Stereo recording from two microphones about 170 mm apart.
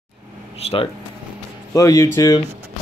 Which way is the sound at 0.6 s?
35° left (ahead or behind).